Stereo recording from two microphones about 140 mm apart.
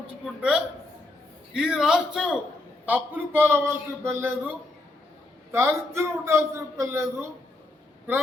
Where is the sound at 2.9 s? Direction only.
15° right (ahead or behind).